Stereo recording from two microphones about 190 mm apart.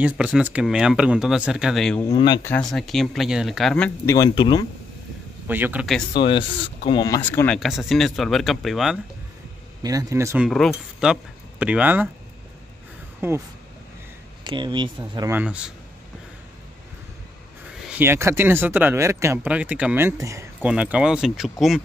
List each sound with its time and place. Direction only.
0.0 s speech: 5° right (ahead or behind)
2.0 s speech: 20° left (ahead or behind)
2.5 s speech: centre (ahead or behind)
4.1 s speech: 20° left (ahead or behind)
5.5 s speech: 10° right (ahead or behind)
6.1 s speech: 25° left (ahead or behind)
6.5 s speech: 70° left (ahead or behind)
6.9 s speech: 20° left (ahead or behind)
7.2 s speech: 10° left (ahead or behind)
9.8 s speech: 15° right (ahead or behind)
13.2 s speech: 10° right (ahead or behind)
14.4 s speech: 25° right (ahead or behind)
15.3 s speech: 5° right (ahead or behind)
17.8 s speech: 10° right (ahead or behind)